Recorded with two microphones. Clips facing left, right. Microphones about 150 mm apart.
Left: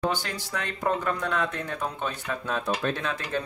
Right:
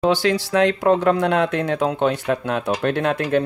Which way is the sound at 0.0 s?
90° right.